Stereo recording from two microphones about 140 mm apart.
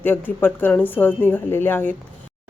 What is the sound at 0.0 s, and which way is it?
Speech, 15° left (ahead or behind).